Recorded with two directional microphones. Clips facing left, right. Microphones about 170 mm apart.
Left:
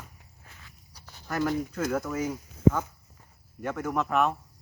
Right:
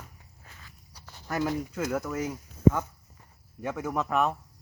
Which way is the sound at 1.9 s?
Centre (ahead or behind).